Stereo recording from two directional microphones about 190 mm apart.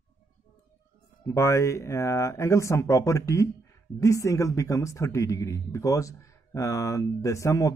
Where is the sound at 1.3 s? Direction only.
15° left (ahead or behind).